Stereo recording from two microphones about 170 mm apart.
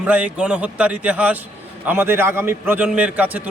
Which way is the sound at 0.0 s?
10° right (ahead or behind).